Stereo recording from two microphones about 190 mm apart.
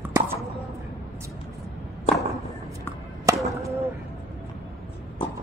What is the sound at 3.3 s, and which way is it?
Chop, 15° right (ahead or behind).